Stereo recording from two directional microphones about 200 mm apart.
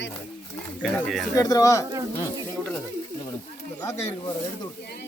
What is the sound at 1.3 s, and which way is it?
Speech, 15° left (ahead or behind).